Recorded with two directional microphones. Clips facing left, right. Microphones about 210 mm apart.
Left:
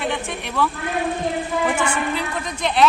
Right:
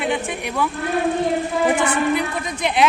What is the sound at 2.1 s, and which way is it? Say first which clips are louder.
Speech: right 4 dB; 10° right (ahead or behind).